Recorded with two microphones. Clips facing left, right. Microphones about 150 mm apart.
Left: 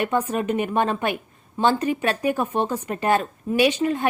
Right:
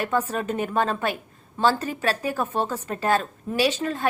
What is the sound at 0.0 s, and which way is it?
A woman's voice, 20° left (ahead or behind).